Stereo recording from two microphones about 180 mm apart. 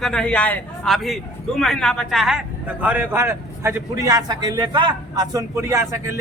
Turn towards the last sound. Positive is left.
turn(degrees=-15)  # may be behind; listen again after turning